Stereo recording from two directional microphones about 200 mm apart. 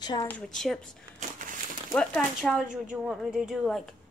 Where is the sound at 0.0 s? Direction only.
20° left (ahead or behind).